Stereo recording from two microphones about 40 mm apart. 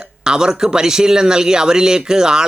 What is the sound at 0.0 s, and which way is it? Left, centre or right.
Speech, centre.